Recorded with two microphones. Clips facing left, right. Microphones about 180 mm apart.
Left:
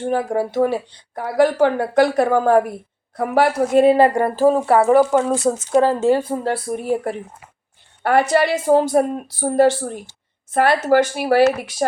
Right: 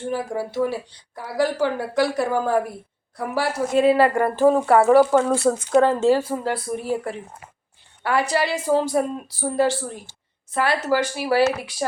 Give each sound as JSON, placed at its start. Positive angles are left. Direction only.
{"t": 0.1, "sound": "a woman's voice", "side_deg": 55}
{"t": 3.9, "sound": "speech", "side_deg": 30}
{"t": 4.4, "sound": "speech", "side_deg": 10}
{"t": 6.8, "sound": "speech", "side_deg": 50}
{"t": 8.3, "sound": "speech", "side_deg": 55}